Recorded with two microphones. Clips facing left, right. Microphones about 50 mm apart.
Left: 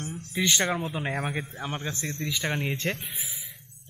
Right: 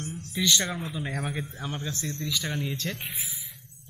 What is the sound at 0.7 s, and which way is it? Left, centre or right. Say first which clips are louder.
Speech: left 3 dB; left.